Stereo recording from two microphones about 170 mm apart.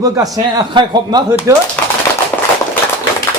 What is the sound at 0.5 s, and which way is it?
Speech, 25° right (ahead or behind).